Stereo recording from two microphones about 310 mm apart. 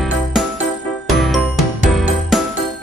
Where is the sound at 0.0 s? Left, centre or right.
Centre.